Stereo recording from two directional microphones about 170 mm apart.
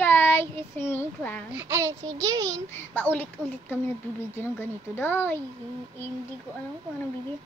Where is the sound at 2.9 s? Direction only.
10° left (ahead or behind).